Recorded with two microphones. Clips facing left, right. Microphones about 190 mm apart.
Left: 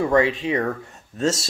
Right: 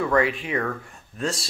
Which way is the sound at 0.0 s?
25° left (ahead or behind).